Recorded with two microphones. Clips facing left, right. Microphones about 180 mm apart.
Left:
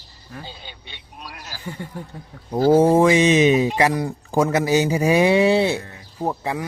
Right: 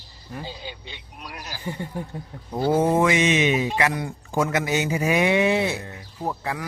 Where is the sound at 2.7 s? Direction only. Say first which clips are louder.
Left 6 dB; 30° left (ahead or behind).